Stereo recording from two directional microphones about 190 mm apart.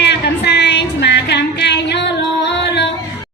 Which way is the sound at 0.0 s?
65° left (ahead or behind).